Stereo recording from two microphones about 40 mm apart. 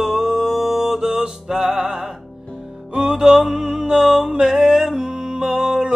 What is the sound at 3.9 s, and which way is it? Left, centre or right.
Music, centre.